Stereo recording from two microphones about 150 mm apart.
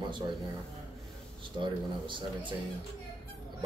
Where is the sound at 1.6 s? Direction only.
35° right (ahead or behind).